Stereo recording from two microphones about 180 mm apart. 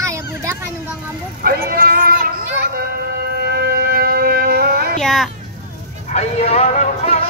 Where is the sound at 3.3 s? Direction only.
60° right (ahead or behind).